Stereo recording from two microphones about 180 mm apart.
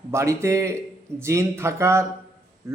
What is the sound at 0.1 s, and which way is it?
A man's voice, 15° right (ahead or behind).